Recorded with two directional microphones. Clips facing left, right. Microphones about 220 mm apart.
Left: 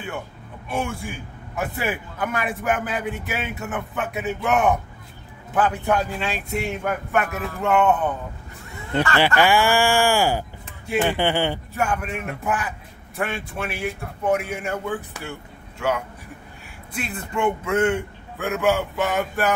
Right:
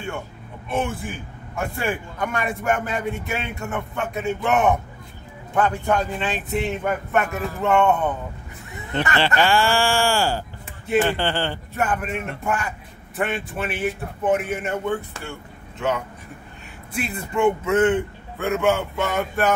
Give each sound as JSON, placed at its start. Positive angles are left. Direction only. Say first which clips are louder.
{"t": 0.7, "sound": "a man's voice", "louder": "right 2 dB", "side_deg": 0}
{"t": 9.4, "sound": "speech", "louder": "left 1 dB", "side_deg": 15}
{"t": 11.7, "sound": "a man's voice", "louder": "right 1 dB", "side_deg": 0}
{"t": 16.9, "sound": "a man's voice", "louder": "right 2 dB", "side_deg": -5}